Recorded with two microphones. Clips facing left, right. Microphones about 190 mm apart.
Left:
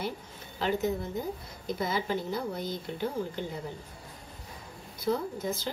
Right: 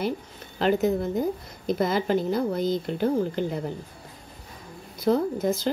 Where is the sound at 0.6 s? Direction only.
80° right.